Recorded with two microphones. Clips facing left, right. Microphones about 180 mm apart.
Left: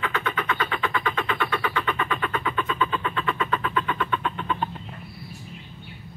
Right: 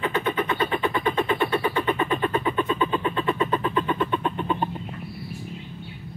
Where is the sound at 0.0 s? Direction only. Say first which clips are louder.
Right 4 dB; 30° right (ahead or behind).